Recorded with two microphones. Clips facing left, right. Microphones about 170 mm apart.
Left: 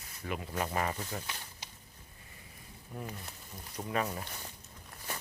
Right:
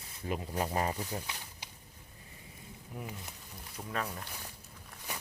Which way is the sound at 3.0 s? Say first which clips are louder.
Left 1 dB; 10° right (ahead or behind).